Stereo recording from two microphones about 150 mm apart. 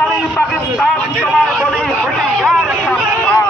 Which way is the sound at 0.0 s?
Centre (ahead or behind).